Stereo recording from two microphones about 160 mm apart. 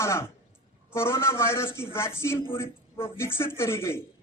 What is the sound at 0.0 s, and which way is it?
A man's voice, 15° left (ahead or behind).